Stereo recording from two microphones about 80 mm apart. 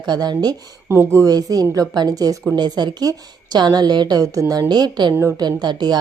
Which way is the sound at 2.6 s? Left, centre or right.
Right.